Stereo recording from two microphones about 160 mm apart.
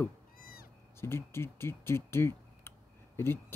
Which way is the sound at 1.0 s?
15° left (ahead or behind).